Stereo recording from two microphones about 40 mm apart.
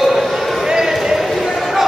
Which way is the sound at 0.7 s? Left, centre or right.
Centre.